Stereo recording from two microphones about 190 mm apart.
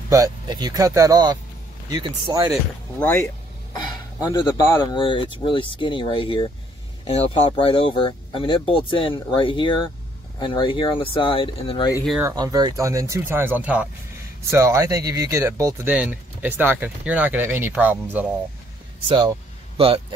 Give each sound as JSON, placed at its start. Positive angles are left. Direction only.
{"t": 0.1, "sound": "speech", "side_deg": -20}
{"t": 3.0, "sound": "speech", "side_deg": 10}
{"t": 12.2, "sound": "speech", "side_deg": -15}
{"t": 19.0, "sound": "speech", "side_deg": -25}